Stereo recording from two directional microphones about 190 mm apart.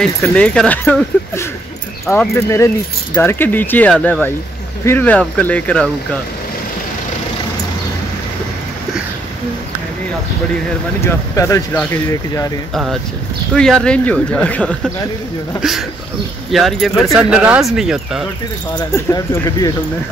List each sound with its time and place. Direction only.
0.0 s speech: 5° left (ahead or behind)
11.1 s speech: 15° left (ahead or behind)
12.7 s speech: centre (ahead or behind)
16.4 s speech: centre (ahead or behind)
18.8 s speech: 15° left (ahead or behind)